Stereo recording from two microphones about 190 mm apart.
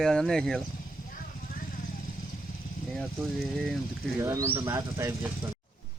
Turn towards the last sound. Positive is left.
turn(degrees=-15)  # may be behind; listen again after turning